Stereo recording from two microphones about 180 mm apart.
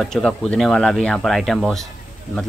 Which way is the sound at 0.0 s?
Centre (ahead or behind).